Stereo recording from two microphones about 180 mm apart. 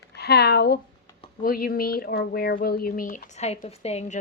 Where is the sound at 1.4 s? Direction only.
55° left (ahead or behind).